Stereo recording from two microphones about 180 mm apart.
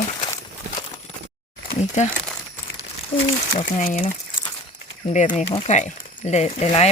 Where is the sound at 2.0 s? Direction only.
40° left (ahead or behind).